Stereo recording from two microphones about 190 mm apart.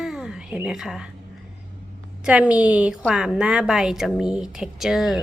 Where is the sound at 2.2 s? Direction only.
5° right (ahead or behind).